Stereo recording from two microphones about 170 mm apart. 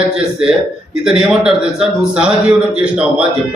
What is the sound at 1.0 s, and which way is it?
A man's voice, 5° right (ahead or behind).